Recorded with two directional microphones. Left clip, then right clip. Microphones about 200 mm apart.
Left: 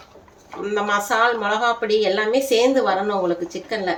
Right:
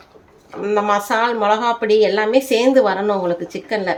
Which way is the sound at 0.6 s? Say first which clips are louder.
Right 4 dB; 45° right (ahead or behind).